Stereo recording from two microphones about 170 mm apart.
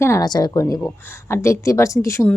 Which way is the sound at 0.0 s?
20° left (ahead or behind).